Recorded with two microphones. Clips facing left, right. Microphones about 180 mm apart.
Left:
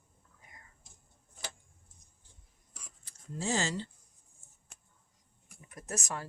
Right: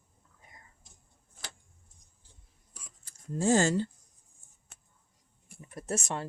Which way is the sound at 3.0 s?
50° right (ahead or behind).